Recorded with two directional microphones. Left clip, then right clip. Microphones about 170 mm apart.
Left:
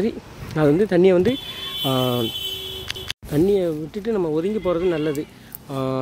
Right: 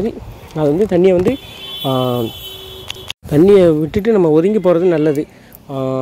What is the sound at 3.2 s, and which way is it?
Speech, 40° right (ahead or behind).